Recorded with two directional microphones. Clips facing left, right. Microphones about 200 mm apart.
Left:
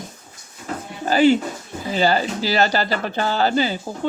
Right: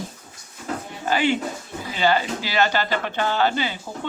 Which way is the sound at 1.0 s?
35° left (ahead or behind).